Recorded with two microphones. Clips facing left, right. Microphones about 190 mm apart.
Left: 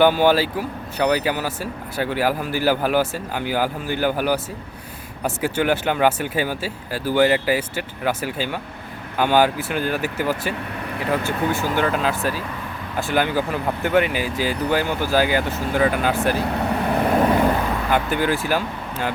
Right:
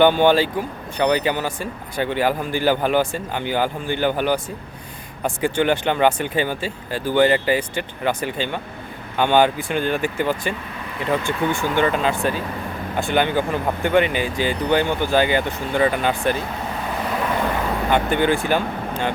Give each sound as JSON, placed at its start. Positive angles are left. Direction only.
{"t": 0.0, "sound": "speech", "side_deg": 5}
{"t": 16.6, "sound": "vehicle", "side_deg": 60}
{"t": 17.9, "sound": "speech", "side_deg": 5}